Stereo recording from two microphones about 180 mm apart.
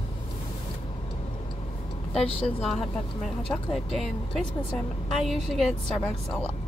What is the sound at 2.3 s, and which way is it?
Speech, 30° left (ahead or behind).